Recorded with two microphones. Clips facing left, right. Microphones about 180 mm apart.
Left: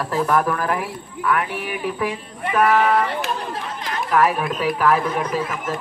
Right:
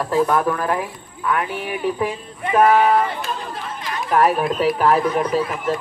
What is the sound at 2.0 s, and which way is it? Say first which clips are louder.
Speech: right 1 dB; 25° right (ahead or behind).